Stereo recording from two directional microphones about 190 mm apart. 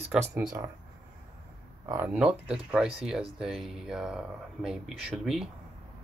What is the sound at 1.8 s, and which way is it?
Speech, 15° right (ahead or behind).